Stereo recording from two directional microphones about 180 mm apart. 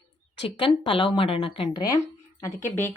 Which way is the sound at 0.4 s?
30° left (ahead or behind).